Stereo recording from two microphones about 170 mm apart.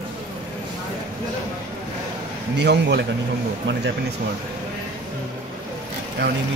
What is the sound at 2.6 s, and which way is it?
Speech, 85° right.